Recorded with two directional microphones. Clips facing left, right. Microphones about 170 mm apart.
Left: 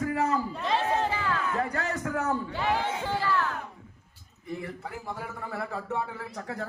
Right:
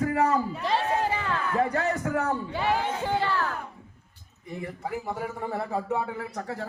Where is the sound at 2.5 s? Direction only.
15° right (ahead or behind).